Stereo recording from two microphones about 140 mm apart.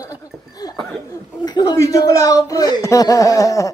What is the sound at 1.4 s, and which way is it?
Speech, 30° left (ahead or behind).